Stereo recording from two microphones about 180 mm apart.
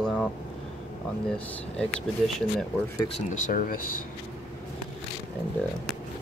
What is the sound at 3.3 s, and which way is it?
Speech, 45° left (ahead or behind).